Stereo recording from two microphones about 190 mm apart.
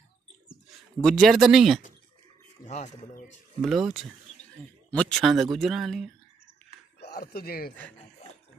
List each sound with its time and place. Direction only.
0.5 s speech: centre (ahead or behind)
2.7 s speech: 40° left (ahead or behind)
3.6 s speech: centre (ahead or behind)
7.0 s speech: 55° left (ahead or behind)